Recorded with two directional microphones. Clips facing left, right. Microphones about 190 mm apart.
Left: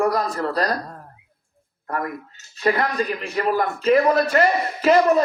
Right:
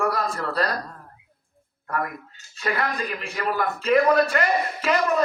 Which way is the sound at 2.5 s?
30° left (ahead or behind).